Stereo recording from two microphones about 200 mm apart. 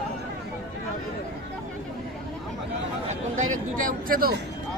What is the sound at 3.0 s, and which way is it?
Chatter, 35° right (ahead or behind).